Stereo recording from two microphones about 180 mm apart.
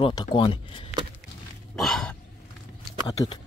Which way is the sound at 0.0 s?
25° left (ahead or behind).